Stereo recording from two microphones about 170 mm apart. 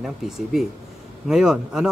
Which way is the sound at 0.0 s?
Centre (ahead or behind).